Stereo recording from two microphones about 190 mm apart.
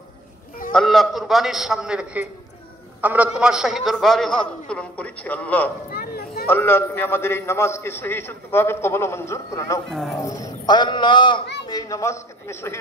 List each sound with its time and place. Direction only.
0.7 s a man's voice: centre (ahead or behind)
5.9 s a sound: 55° left (ahead or behind)
6.4 s a man's voice: 10° left (ahead or behind)
9.8 s a man's voice: centre (ahead or behind)
10.2 s a man's voice: 20° left (ahead or behind)